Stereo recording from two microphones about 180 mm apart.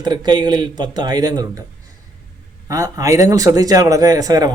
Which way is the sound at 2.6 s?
20° right (ahead or behind).